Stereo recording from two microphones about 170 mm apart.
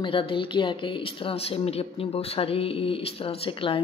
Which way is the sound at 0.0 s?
30° left (ahead or behind).